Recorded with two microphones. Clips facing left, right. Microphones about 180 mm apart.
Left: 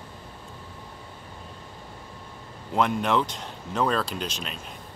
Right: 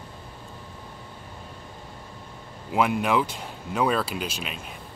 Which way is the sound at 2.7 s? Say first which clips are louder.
Right 1 dB; 5° right (ahead or behind).